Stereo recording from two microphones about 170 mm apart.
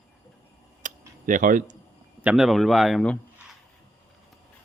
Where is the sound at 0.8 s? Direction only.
50° right (ahead or behind).